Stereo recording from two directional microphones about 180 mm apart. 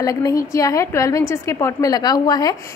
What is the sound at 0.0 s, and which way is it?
A woman's voice, 20° left (ahead or behind).